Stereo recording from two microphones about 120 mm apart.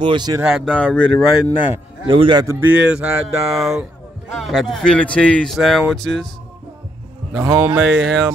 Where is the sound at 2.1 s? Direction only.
45° right (ahead or behind).